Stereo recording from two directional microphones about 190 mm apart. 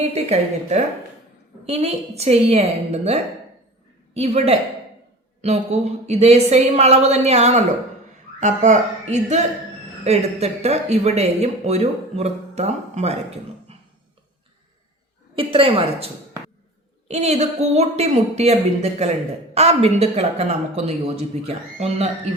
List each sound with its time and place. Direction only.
0.0 s speech: 35° right (ahead or behind)
15.4 s a woman's voice: 30° right (ahead or behind)
17.1 s speech: 35° right (ahead or behind)